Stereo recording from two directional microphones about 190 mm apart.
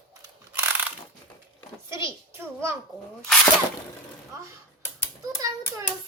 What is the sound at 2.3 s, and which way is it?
Speech, 15° right (ahead or behind).